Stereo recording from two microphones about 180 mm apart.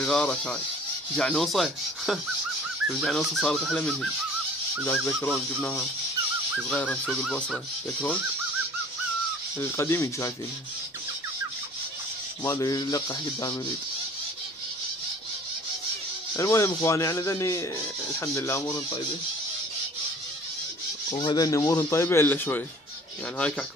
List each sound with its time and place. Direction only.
0.0 s speech: 5° left (ahead or behind)
4.8 s speech: 15° left (ahead or behind)
9.6 s speech: 15° left (ahead or behind)
12.4 s a sound: 20° left (ahead or behind)
16.3 s speech: 15° left (ahead or behind)
21.2 s speech: 25° left (ahead or behind)